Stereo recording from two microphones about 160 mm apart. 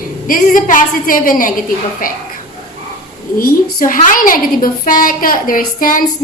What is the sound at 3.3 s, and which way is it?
A woman's voice, 60° left (ahead or behind).